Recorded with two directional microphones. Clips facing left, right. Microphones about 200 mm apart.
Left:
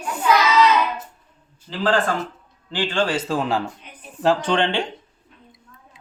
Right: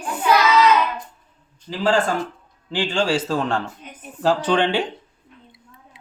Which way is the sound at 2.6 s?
15° right (ahead or behind).